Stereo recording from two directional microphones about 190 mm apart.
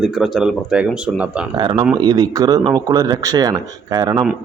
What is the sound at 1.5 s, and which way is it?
Speech, 25° right (ahead or behind).